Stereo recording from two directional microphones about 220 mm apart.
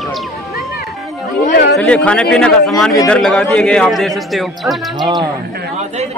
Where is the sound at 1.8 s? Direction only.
5° left (ahead or behind).